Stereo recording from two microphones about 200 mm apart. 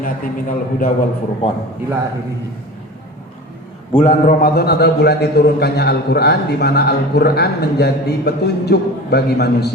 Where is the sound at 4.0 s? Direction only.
40° left (ahead or behind).